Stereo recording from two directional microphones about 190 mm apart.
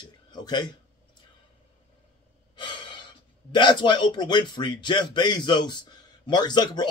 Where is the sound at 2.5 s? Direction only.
25° left (ahead or behind).